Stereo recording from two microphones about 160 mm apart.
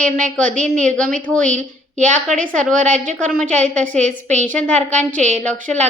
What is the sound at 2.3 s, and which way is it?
A woman's voice, 55° right (ahead or behind).